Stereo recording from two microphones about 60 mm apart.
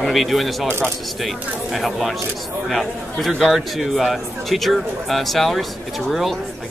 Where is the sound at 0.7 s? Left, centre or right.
Right.